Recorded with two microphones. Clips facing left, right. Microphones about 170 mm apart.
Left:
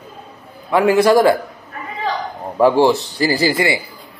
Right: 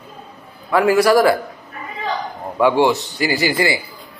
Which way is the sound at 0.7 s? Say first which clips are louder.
Left 1 dB; 20° left (ahead or behind).